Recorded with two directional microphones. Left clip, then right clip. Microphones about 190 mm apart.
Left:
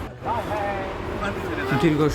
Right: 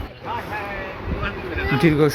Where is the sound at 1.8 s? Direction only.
20° right (ahead or behind).